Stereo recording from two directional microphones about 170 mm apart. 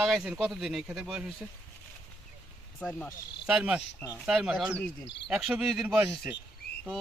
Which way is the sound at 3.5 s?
5° right (ahead or behind).